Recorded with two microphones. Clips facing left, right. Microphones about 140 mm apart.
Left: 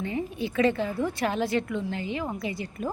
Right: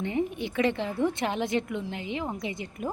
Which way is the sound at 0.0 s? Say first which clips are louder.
Right 1 dB; 20° right (ahead or behind).